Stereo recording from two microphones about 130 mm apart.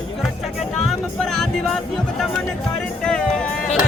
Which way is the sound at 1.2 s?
5° left (ahead or behind).